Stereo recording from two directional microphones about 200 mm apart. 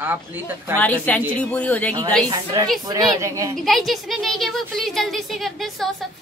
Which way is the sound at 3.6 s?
Centre (ahead or behind).